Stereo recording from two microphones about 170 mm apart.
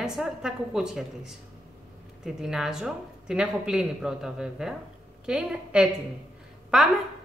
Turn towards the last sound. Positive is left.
turn(degrees=0)  # may be behind; listen again after turning